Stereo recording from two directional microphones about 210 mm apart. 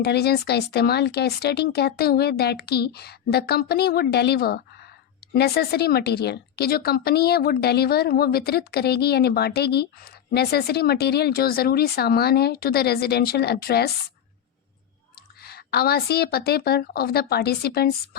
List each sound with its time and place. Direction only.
0.0 s speech: 50° left (ahead or behind)
15.1 s speech: 50° left (ahead or behind)